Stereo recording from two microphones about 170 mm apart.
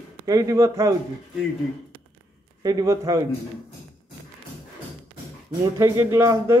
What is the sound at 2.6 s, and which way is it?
Speech, 20° right (ahead or behind).